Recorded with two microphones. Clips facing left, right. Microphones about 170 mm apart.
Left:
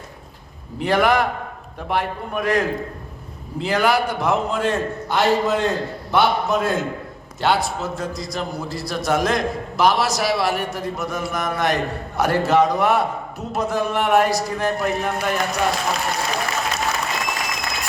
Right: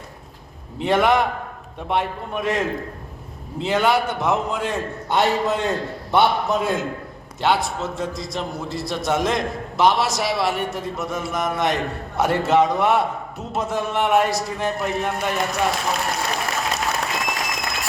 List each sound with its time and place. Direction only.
0.8 s a man's voice: centre (ahead or behind)